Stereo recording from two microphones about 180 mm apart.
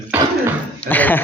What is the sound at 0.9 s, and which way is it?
Speech, 10° left (ahead or behind).